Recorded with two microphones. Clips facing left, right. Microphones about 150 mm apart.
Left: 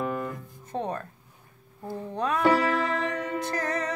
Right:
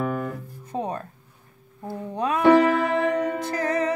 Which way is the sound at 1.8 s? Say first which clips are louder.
Right 2 dB; 10° right (ahead or behind).